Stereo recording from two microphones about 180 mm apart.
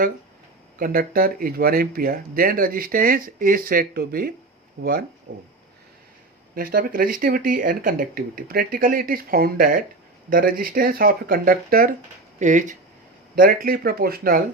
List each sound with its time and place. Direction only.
0.8 s speech: 55° right (ahead or behind)
6.5 s speech: 55° right (ahead or behind)